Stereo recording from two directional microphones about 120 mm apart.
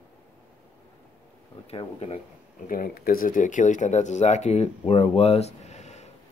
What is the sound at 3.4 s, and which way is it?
Speech, 90° left.